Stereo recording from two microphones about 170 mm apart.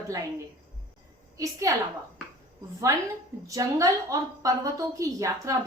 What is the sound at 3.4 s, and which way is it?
A woman's voice, 20° right (ahead or behind).